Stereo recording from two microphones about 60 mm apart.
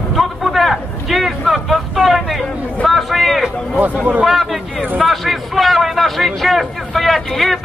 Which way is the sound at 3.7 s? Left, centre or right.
Right.